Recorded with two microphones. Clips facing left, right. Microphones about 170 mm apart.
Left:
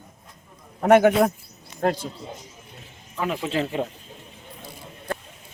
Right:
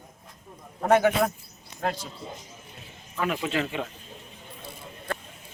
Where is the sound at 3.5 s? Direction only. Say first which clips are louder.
Left 3 dB; 30° left (ahead or behind).